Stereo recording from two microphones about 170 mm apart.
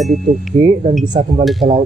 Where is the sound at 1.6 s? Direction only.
25° right (ahead or behind).